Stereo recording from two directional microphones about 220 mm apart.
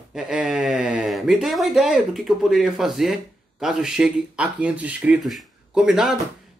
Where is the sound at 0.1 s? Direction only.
5° right (ahead or behind).